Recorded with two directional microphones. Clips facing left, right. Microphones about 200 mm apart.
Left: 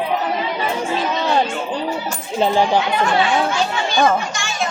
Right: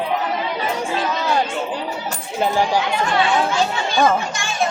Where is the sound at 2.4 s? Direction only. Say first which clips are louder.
Left 3 dB; 25° left (ahead or behind).